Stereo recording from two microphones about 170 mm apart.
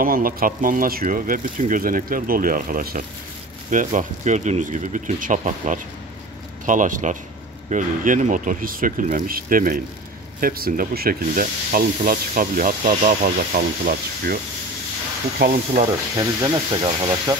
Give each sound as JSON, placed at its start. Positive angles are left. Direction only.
{"t": 0.0, "sound": "speech", "side_deg": -55}
{"t": 15.8, "sound": "speech", "side_deg": -25}